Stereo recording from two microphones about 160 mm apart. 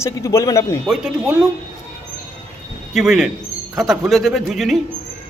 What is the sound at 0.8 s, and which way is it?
Speech, centre (ahead or behind).